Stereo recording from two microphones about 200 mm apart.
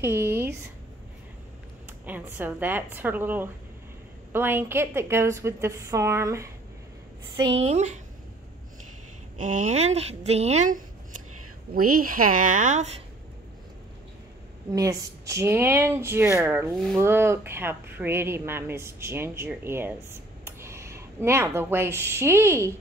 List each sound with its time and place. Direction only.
0.0 s speech: 10° right (ahead or behind)
2.0 s speech: 10° right (ahead or behind)
7.6 s speech: 35° right (ahead or behind)
9.4 s speech: 35° right (ahead or behind)
11.9 s speech: 45° right (ahead or behind)
14.7 s speech: 15° right (ahead or behind)
16.7 s speech: centre (ahead or behind)
17.0 s speech: 10° right (ahead or behind)